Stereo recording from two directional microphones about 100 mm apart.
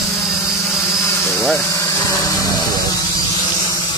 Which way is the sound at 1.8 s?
35° left (ahead or behind).